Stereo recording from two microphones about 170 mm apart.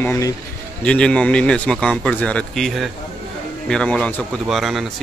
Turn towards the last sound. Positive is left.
turn(degrees=0)  # may be behind; listen again after turning